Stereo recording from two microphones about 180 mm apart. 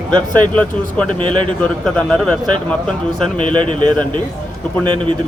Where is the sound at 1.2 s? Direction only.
25° right (ahead or behind).